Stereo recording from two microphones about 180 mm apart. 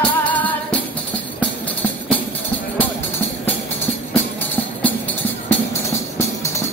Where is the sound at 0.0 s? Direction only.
5° left (ahead or behind).